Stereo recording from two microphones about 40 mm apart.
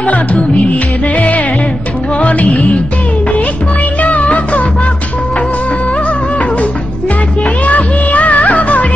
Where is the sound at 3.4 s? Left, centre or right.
Left.